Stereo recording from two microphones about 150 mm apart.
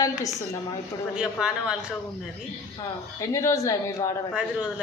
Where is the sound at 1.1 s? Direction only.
5° right (ahead or behind).